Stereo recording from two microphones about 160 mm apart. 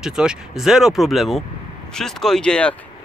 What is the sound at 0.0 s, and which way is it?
Speech, 5° right (ahead or behind).